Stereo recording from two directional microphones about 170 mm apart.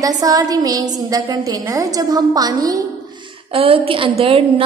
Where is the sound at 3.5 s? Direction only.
35° right (ahead or behind).